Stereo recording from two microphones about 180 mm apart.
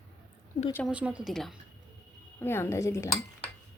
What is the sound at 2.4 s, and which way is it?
Speech, 15° left (ahead or behind).